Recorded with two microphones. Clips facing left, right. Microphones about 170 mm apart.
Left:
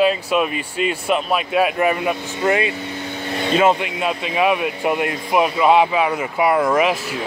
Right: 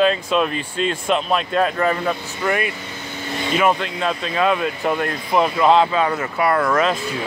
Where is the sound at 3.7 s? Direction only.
10° left (ahead or behind).